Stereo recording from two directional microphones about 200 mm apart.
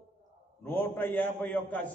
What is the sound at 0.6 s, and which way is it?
A man's voice, 10° left (ahead or behind).